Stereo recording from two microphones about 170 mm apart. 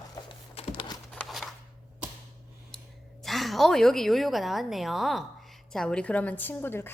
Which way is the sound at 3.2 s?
Centre (ahead or behind).